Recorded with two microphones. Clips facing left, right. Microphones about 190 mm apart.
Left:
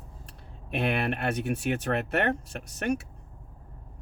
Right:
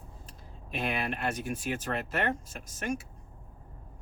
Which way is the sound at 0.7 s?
65° left (ahead or behind).